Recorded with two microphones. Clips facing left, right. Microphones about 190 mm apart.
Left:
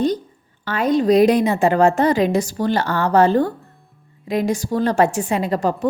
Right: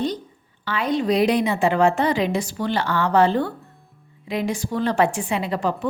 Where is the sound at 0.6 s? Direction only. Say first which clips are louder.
Left 5 dB; 45° left (ahead or behind).